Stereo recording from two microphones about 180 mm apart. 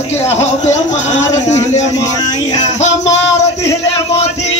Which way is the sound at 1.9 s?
20° left (ahead or behind).